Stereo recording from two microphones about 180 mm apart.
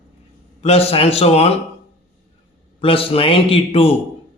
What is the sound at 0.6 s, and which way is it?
Speech, 35° left (ahead or behind).